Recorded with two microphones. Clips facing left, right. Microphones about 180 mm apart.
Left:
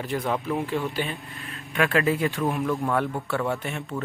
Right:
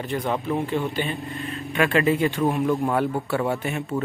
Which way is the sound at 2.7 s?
20° right (ahead or behind).